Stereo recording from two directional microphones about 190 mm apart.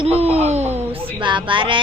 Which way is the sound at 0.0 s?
30° right (ahead or behind).